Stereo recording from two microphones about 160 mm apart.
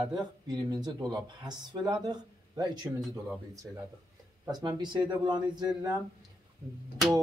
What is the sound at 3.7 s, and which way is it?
Speech, 5° right (ahead or behind).